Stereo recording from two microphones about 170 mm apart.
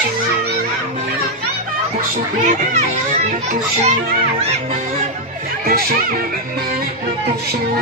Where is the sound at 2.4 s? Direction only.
50° right (ahead or behind).